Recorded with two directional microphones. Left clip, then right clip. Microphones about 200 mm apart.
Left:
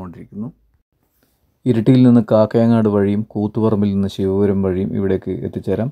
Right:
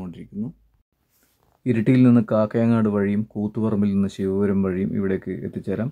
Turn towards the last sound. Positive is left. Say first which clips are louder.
# left 7 dB
turn(degrees=20)  # may be behind; listen again after turning